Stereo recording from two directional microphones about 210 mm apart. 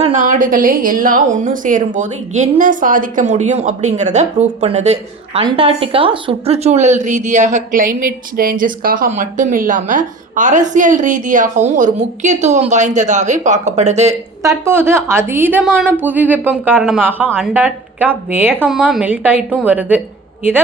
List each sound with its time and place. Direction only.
0.0 s a woman's voice: 35° right (ahead or behind)
14.4 s speech: 10° right (ahead or behind)